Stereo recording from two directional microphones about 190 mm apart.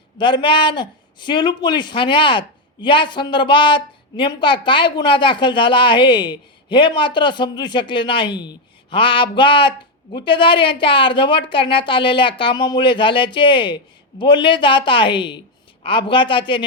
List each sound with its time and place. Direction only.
0.2 s a woman's voice: 25° left (ahead or behind)